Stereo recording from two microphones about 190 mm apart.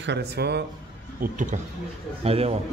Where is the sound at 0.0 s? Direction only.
60° right (ahead or behind).